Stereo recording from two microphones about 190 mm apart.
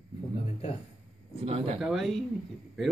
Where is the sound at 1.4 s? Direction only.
30° right (ahead or behind).